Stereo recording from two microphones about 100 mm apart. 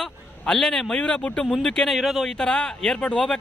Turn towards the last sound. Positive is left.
turn(degrees=10)  # may be behind; listen again after turning